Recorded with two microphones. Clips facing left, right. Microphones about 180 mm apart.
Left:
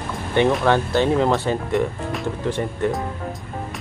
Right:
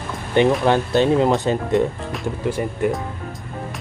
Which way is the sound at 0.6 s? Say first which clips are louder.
Right 1 dB; 15° right (ahead or behind).